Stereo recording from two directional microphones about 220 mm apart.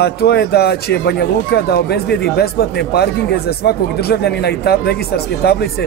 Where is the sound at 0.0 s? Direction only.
50° left (ahead or behind).